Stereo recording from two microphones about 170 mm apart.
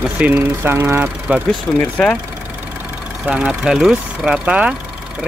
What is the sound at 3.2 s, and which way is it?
Speech, 5° right (ahead or behind).